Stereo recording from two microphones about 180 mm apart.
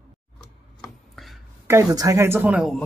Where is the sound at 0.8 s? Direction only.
Centre (ahead or behind).